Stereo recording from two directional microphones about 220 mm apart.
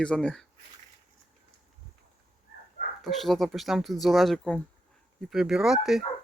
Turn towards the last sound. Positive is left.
turn(degrees=0)  # may be behind; listen again after turning